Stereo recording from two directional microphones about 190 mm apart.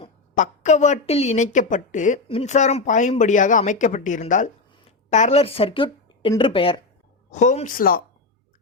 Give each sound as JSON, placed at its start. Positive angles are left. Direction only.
{"t": 0.0, "sound": "a woman's voice", "side_deg": 40}
{"t": 7.3, "sound": "a woman's voice", "side_deg": 40}